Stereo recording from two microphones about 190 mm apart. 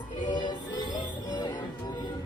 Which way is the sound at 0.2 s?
25° left (ahead or behind).